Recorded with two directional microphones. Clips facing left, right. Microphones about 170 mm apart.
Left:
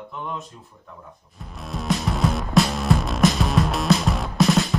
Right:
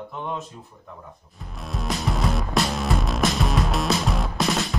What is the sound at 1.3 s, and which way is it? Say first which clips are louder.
Music: left 1 dB; centre (ahead or behind).